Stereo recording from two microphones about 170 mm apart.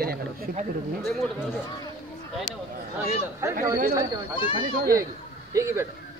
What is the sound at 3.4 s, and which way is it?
Speech, 20° right (ahead or behind).